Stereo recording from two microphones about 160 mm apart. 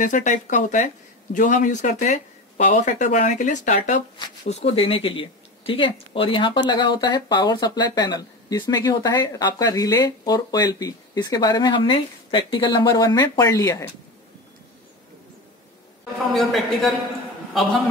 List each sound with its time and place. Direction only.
0.0 s speech: 55° left (ahead or behind)
4.5 s speech: 40° left (ahead or behind); by 13.8 s 20° left (ahead or behind)
16.3 s a man's voice: centre (ahead or behind)